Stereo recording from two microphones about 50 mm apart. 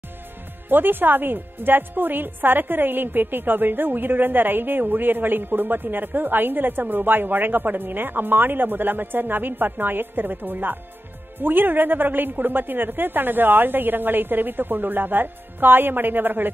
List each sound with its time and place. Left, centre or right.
0.7 s a woman's voice: right